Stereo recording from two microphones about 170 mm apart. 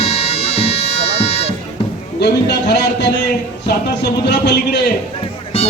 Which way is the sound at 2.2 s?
75° left (ahead or behind).